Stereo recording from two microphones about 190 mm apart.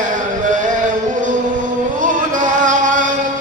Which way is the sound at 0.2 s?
45° right (ahead or behind).